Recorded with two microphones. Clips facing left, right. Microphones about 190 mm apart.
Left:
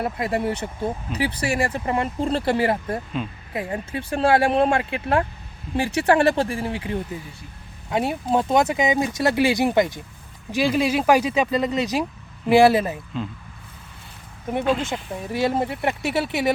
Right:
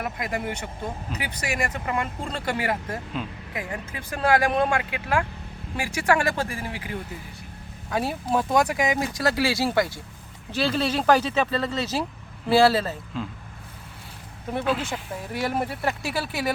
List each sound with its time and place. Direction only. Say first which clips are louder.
0.0 s speech: left 6 dB; 30° left (ahead or behind)
14.6 s speech: left 4 dB; 5° right (ahead or behind)
14.8 s speech: left 3 dB; 25° left (ahead or behind)